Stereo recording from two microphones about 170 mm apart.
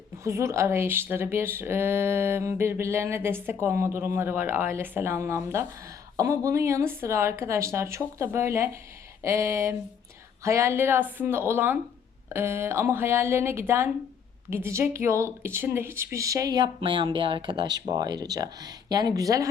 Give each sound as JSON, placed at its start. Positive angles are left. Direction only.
{"t": 0.3, "sound": "speech", "side_deg": -15}